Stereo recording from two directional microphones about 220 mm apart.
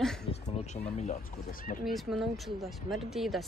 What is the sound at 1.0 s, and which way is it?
Speech, 35° left (ahead or behind).